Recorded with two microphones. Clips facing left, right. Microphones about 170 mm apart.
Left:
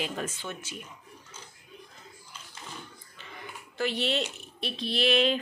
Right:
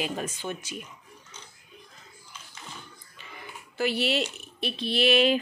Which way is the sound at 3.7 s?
5° right (ahead or behind).